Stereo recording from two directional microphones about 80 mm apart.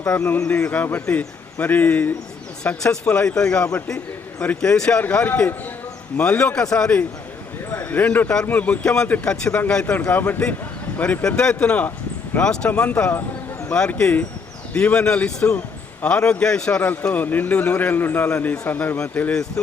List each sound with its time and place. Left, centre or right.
0.4 s speech: centre
2.6 s a man's voice: centre
7.7 s a man's voice: left